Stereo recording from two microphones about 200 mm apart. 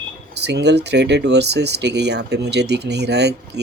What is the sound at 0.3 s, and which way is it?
Speech, 55° right (ahead or behind).